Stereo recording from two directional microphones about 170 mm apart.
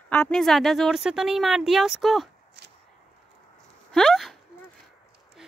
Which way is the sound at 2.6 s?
80° right.